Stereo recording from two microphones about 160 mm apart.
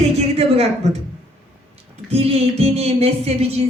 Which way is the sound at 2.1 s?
40° right (ahead or behind).